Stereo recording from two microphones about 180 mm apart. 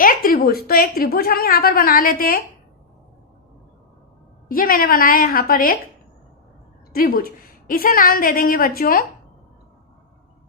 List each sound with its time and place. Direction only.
0.0 s a woman's voice: 50° left (ahead or behind)
4.4 s a woman's voice: 50° left (ahead or behind)
6.9 s a woman's voice: 55° left (ahead or behind)